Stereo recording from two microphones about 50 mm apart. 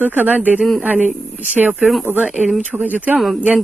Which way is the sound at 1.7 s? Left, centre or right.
Centre.